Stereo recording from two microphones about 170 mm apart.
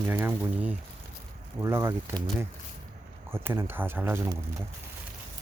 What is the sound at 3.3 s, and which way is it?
Speech, 15° right (ahead or behind).